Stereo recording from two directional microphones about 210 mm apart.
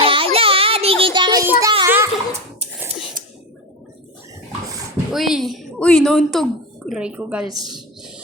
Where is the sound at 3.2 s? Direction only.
40° right (ahead or behind).